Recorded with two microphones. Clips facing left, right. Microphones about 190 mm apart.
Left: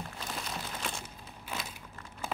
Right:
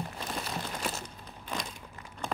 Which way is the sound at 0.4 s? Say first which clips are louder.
Right 4 dB; 5° right (ahead or behind).